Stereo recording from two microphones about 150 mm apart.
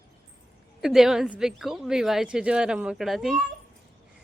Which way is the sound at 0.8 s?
5° right (ahead or behind).